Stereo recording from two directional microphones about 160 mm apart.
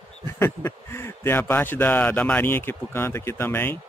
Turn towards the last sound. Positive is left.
turn(degrees=10)  # may be behind; listen again after turning